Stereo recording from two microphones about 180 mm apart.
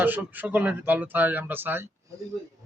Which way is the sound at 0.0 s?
10° right (ahead or behind).